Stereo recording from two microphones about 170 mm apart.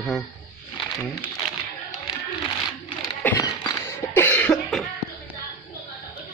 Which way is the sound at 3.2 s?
10° left (ahead or behind).